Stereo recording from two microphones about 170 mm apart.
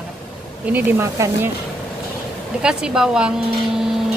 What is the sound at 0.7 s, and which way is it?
Speech, 15° right (ahead or behind).